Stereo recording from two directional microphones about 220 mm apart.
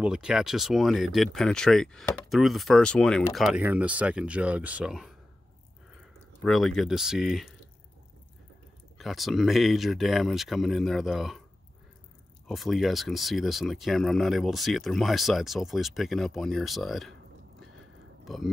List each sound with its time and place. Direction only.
0.0 s speech: 5° right (ahead or behind)
6.4 s speech: centre (ahead or behind)
8.9 s speech: centre (ahead or behind)
12.4 s speech: centre (ahead or behind)
18.2 s a sound: centre (ahead or behind)